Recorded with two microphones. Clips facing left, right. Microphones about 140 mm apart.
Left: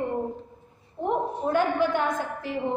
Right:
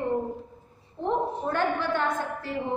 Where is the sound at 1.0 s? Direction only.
15° left (ahead or behind).